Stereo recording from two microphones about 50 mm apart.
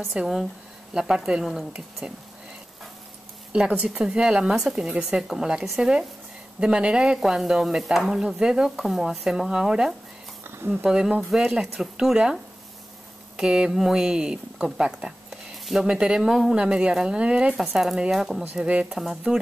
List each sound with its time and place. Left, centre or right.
0.1 s speech: centre
0.9 s stir: centre
1.4 s speech: centre
2.0 s speech: right
3.5 s stir: centre
13.4 s stir: centre
15.5 s speech: centre
16.2 s speech: centre
16.5 s stir: centre
17.6 s stir: centre
18.1 s speech: centre
18.9 s stir: centre